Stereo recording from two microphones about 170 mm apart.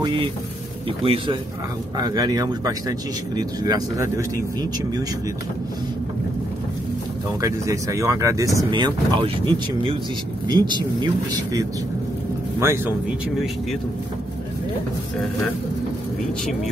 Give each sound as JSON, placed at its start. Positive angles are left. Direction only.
{"t": 0.0, "sound": "speech", "side_deg": -30}
{"t": 7.4, "sound": "speech", "side_deg": -20}